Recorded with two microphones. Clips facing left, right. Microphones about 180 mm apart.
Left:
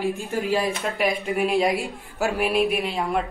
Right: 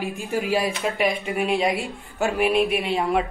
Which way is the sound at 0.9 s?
Centre (ahead or behind).